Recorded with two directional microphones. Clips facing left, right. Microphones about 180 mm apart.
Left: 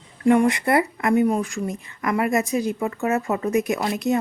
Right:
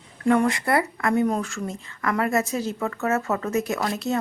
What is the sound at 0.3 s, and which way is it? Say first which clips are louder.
Speech: left 3 dB; 15° left (ahead or behind).